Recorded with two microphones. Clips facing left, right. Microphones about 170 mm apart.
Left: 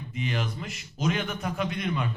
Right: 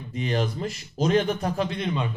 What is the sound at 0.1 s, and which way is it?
A man's voice, 35° right (ahead or behind).